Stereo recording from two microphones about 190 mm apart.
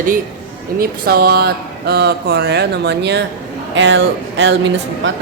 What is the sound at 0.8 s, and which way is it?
Speech, 55° right (ahead or behind).